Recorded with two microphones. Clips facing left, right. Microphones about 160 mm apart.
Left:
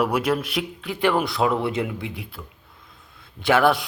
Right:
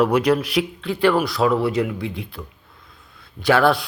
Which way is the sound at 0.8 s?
15° left (ahead or behind).